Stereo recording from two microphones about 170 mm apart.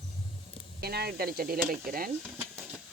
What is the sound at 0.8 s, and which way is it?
Speech, 70° right (ahead or behind).